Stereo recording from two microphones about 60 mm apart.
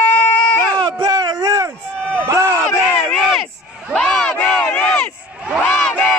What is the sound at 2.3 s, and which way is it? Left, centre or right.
Run, right.